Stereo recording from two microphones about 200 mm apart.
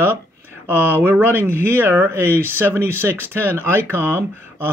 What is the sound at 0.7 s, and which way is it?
Speech, 10° right (ahead or behind).